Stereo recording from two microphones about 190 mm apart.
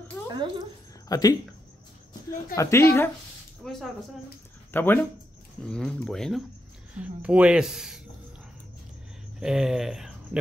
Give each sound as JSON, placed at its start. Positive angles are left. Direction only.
{"t": 0.3, "sound": "speech", "side_deg": -25}
{"t": 1.0, "sound": "speech", "side_deg": 20}
{"t": 2.5, "sound": "a woman's voice", "side_deg": 15}
{"t": 9.4, "sound": "speech", "side_deg": -5}